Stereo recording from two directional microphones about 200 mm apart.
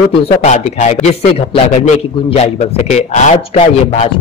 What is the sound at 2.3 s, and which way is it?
Speech, 35° left (ahead or behind).